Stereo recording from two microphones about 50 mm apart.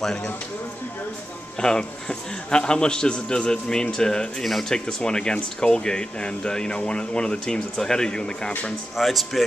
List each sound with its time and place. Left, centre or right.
0.0 s speech: centre
1.6 s speech: centre
8.9 s speech: centre